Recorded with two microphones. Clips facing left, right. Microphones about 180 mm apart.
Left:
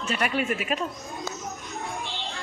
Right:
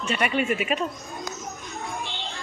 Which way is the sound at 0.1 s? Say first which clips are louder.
Right 2 dB; centre (ahead or behind).